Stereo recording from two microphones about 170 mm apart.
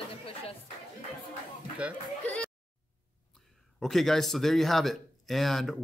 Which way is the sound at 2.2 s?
5° left (ahead or behind).